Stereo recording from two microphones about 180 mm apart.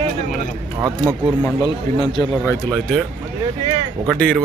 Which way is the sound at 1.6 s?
25° left (ahead or behind).